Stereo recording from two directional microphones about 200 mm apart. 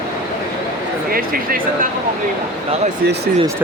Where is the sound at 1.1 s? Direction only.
45° right (ahead or behind).